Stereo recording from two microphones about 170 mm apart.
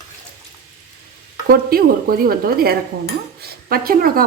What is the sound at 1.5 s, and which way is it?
A woman's voice, 60° right (ahead or behind).